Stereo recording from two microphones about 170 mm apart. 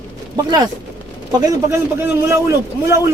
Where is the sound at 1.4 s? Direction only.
15° right (ahead or behind).